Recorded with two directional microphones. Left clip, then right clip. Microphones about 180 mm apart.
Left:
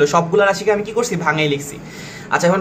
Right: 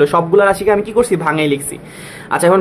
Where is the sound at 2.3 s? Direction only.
50° right (ahead or behind).